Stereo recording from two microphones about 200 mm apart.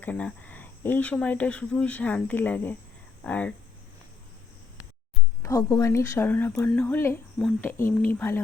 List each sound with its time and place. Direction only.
0.0 s speech: 5° left (ahead or behind)
5.4 s speech: 15° left (ahead or behind)